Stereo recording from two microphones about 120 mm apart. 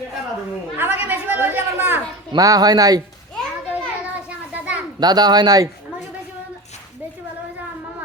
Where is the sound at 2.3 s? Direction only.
30° right (ahead or behind).